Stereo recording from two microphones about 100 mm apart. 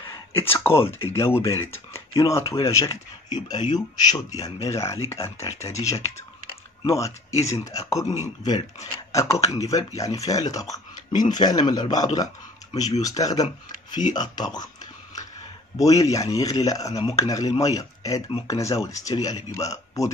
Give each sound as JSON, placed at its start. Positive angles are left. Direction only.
{"t": 0.3, "sound": "speech", "side_deg": 25}
{"t": 3.3, "sound": "speech", "side_deg": 45}
{"t": 4.6, "sound": "speech", "side_deg": 30}
{"t": 15.8, "sound": "speech", "side_deg": 35}